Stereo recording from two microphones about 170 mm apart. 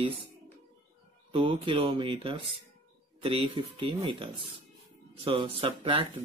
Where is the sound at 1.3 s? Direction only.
30° right (ahead or behind).